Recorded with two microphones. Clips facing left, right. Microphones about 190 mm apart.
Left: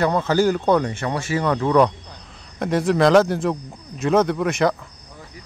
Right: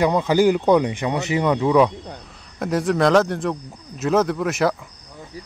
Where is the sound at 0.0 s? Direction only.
15° right (ahead or behind).